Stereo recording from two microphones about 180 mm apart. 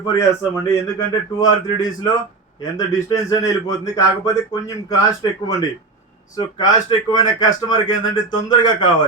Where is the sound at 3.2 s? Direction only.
20° left (ahead or behind).